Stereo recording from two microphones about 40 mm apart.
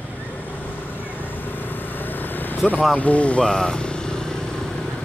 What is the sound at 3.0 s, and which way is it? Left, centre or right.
Speech, left.